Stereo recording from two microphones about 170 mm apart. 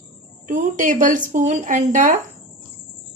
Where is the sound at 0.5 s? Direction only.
50° right (ahead or behind).